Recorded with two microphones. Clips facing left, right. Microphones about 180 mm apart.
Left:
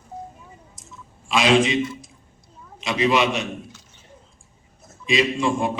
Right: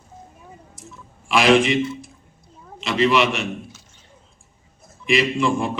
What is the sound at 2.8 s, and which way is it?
Speech, 70° right (ahead or behind).